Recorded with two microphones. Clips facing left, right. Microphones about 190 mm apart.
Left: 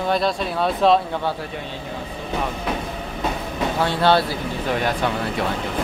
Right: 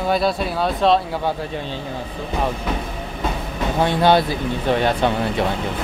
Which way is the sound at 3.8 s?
15° right (ahead or behind).